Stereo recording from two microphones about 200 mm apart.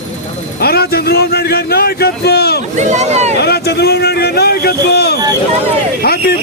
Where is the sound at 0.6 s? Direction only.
50° left (ahead or behind).